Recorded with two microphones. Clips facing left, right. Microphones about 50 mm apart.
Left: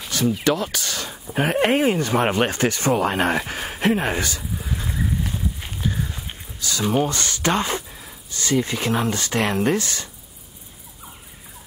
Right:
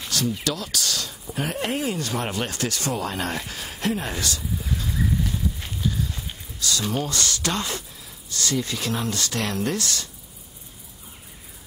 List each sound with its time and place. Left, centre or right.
0.4 s speech: left
4.2 s a sound: left
5.7 s walk: left
6.2 s speech: left